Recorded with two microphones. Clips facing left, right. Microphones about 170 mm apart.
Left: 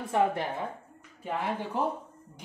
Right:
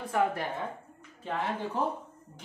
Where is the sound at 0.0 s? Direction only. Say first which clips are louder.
Left 2 dB; 25° left (ahead or behind).